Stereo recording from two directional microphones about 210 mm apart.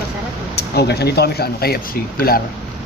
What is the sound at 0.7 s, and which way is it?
Speech, 50° left (ahead or behind).